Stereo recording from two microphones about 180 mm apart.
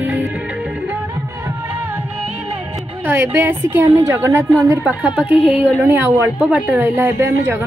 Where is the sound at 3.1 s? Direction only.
10° right (ahead or behind).